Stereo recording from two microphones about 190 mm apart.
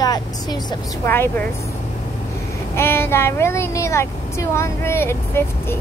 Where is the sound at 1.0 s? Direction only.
10° left (ahead or behind).